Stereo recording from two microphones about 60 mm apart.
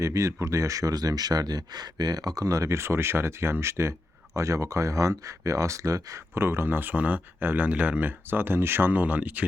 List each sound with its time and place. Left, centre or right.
0.0 s speech: right
2.6 s speech: right
6.3 s speech: right